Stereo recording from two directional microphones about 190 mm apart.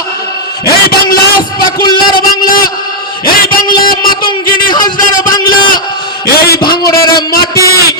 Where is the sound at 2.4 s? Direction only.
50° left (ahead or behind).